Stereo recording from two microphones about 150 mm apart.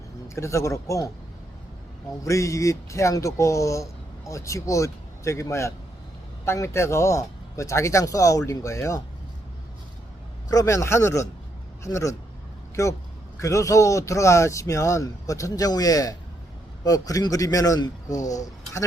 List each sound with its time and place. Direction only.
0.3 s speech: 20° left (ahead or behind)
2.2 s speech: 20° left (ahead or behind)
10.5 s speech: 20° left (ahead or behind)